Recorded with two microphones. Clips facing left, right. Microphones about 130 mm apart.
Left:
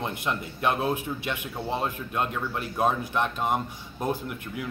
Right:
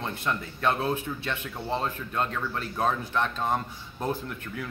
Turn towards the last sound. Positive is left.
turn(degrees=15)  # may be behind; listen again after turning